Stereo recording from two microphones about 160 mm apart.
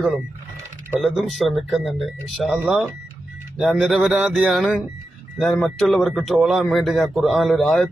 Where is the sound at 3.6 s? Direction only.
Centre (ahead or behind).